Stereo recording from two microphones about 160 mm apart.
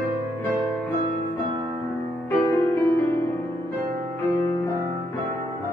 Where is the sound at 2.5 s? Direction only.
15° left (ahead or behind).